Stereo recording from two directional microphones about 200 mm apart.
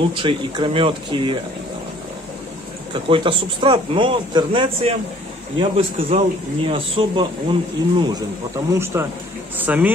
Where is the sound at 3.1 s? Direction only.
25° right (ahead or behind).